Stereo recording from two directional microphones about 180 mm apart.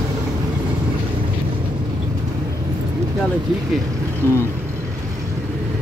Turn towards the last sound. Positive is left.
turn(degrees=15)  # may be behind; listen again after turning